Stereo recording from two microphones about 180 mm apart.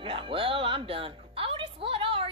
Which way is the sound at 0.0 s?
30° right (ahead or behind).